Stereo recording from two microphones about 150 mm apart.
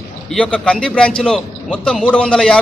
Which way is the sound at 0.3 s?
5° left (ahead or behind).